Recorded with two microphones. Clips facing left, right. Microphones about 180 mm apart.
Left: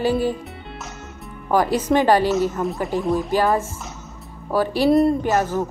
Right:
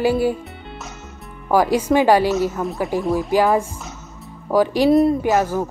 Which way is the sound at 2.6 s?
Centre (ahead or behind).